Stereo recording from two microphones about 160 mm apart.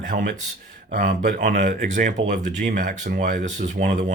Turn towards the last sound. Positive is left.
turn(degrees=-50)  # may be behind; listen again after turning